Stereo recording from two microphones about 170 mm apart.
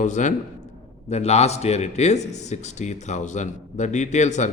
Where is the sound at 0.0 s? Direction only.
45° left (ahead or behind).